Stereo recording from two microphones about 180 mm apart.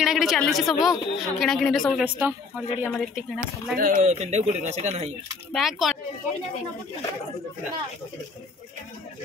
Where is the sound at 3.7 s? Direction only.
50° right (ahead or behind).